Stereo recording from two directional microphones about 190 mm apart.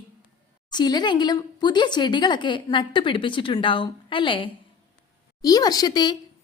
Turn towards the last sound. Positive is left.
turn(degrees=20)  # may be behind; listen again after turning